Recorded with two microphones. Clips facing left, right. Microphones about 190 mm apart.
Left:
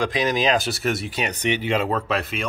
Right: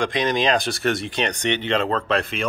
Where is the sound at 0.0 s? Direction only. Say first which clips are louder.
Even; 5° left (ahead or behind).